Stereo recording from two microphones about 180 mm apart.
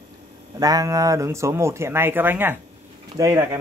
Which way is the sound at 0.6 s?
20° right (ahead or behind).